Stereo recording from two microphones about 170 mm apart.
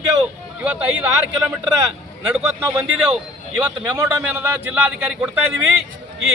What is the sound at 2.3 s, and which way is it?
Speech, 10° right (ahead or behind).